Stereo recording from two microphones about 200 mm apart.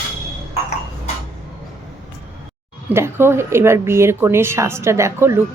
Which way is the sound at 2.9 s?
10° right (ahead or behind).